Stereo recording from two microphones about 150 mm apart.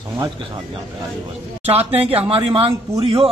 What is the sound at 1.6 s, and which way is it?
A man's voice, 45° right (ahead or behind).